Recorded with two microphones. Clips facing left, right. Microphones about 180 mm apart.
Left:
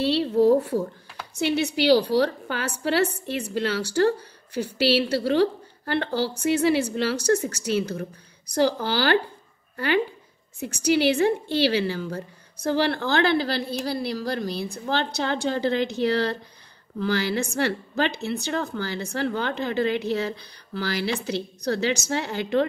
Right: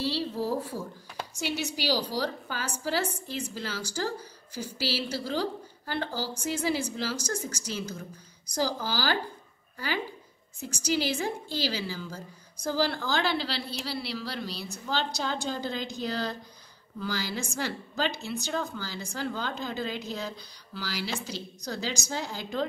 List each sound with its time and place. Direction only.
0.0 s a woman's voice: 65° left (ahead or behind)